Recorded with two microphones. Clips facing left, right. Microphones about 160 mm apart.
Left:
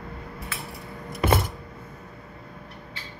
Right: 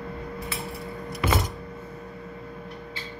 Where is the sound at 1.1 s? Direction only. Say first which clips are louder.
Left 4 dB; 50° left (ahead or behind).